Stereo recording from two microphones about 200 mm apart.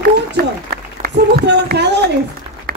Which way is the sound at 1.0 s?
55° right (ahead or behind).